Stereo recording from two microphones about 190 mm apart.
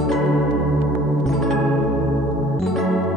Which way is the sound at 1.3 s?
Centre (ahead or behind).